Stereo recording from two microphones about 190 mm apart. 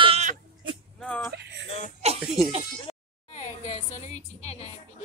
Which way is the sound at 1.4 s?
65° right (ahead or behind).